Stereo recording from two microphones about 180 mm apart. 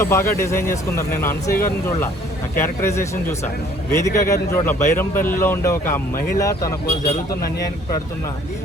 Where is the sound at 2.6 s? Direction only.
15° left (ahead or behind).